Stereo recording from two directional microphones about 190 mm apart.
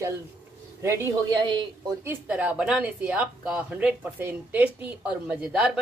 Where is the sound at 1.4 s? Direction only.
25° right (ahead or behind).